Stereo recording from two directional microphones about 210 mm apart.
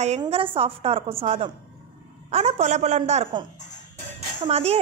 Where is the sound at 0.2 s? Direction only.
25° right (ahead or behind).